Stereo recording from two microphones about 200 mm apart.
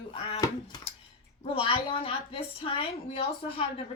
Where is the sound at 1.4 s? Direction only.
30° left (ahead or behind).